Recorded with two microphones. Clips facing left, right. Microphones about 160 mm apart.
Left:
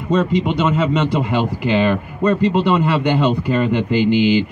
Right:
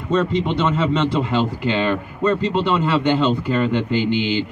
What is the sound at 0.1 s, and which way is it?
Speech, 15° left (ahead or behind).